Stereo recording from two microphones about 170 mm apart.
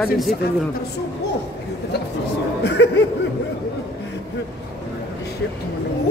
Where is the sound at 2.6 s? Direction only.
90° left.